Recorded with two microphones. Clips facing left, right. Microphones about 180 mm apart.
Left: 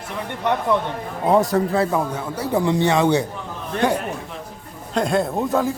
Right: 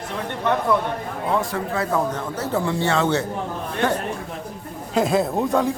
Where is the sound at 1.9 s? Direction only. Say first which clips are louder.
Even; 15° left (ahead or behind).